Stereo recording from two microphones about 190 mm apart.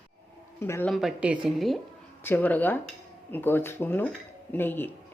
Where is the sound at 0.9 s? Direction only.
Centre (ahead or behind).